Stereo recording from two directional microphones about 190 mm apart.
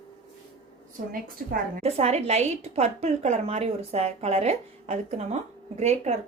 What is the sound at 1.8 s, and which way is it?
A woman's voice, 35° right (ahead or behind).